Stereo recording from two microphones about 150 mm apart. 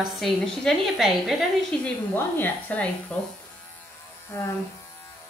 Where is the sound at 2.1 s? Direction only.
15° left (ahead or behind).